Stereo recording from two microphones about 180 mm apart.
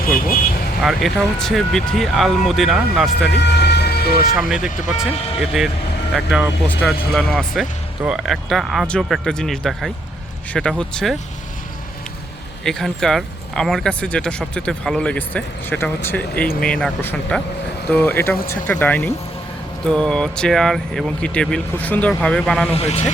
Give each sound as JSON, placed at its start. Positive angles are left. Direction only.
{"t": 0.0, "sound": "vehicle", "side_deg": 50}
{"t": 0.8, "sound": "speech", "side_deg": 0}
{"t": 3.2, "sound": "vehicle", "side_deg": 70}
{"t": 4.4, "sound": "speech", "side_deg": -5}
{"t": 12.6, "sound": "speech", "side_deg": 0}
{"t": 22.7, "sound": "speech", "side_deg": 35}